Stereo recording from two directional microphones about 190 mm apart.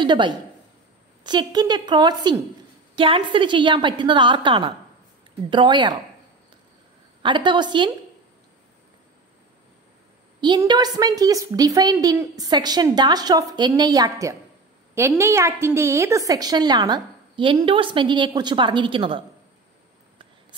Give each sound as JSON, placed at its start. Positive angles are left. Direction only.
{"t": 0.0, "sound": "a woman's voice", "side_deg": -25}
{"t": 7.2, "sound": "a woman's voice", "side_deg": -25}
{"t": 10.6, "sound": "a woman's voice", "side_deg": -20}